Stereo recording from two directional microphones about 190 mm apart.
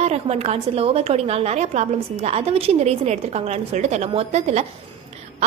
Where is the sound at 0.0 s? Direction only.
35° right (ahead or behind).